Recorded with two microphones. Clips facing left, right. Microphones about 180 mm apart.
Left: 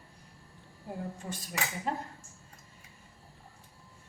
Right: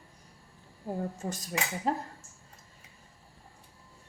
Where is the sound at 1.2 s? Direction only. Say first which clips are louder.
Right 3 dB; 45° right (ahead or behind).